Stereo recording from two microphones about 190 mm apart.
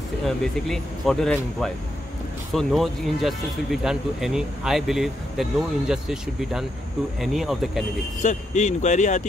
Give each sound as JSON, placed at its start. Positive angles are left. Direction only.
{"t": 0.2, "sound": "speech", "side_deg": 0}
{"t": 8.2, "sound": "speech", "side_deg": 40}